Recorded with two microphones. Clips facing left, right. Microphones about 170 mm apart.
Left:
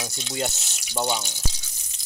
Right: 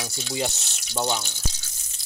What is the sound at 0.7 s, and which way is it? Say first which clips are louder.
Water: even; 10° left (ahead or behind).